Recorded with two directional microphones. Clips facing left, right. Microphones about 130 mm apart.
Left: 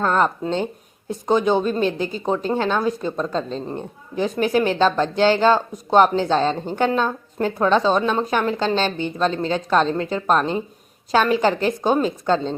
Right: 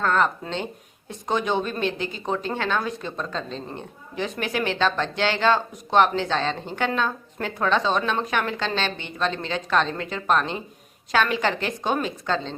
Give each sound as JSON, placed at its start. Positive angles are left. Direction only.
{"t": 0.0, "sound": "speech", "side_deg": 30}